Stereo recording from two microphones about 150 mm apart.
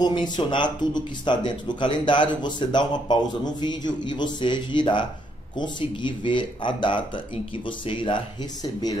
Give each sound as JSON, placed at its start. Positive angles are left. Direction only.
{"t": 0.0, "sound": "speech", "side_deg": 30}